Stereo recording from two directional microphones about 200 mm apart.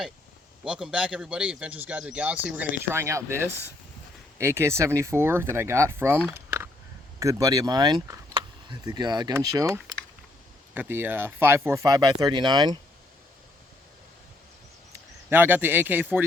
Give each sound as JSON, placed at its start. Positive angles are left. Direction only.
{"t": 0.6, "sound": "speech", "side_deg": -5}
{"t": 6.2, "sound": "a sound", "side_deg": -10}
{"t": 7.2, "sound": "speech", "side_deg": -15}
{"t": 14.9, "sound": "speech", "side_deg": -10}